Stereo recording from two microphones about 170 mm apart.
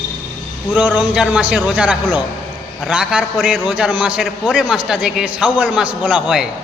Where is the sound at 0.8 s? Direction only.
10° right (ahead or behind).